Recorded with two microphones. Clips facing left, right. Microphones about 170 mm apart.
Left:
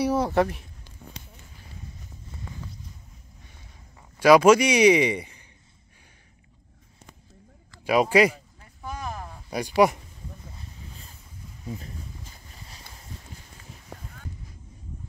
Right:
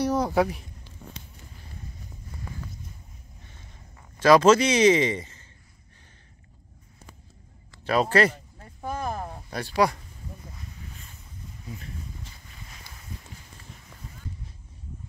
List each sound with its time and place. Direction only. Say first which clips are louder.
0.0 s speech: left 1 dB; 5° left (ahead or behind)
4.2 s a man's voice: left 1 dB; 10° left (ahead or behind)
7.8 s a man's voice: left 2 dB; 10° left (ahead or behind)
8.5 s a sound: right 4 dB; 50° right (ahead or behind)
9.5 s a man's voice: left 4 dB; 15° left (ahead or behind)
13.9 s a sound: left 6 dB; 75° left (ahead or behind)